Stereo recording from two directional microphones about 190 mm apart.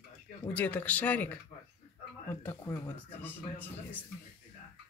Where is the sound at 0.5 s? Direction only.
10° left (ahead or behind).